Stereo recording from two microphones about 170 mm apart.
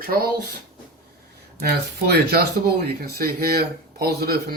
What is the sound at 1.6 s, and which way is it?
Speech, 65° right (ahead or behind).